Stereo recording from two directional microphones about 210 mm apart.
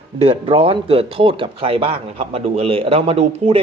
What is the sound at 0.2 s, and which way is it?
Speech, 25° right (ahead or behind).